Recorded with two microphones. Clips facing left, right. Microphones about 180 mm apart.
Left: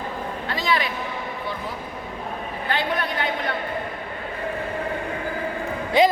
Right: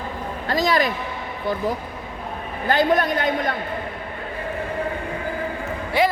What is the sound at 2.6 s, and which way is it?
Speech, 40° right (ahead or behind).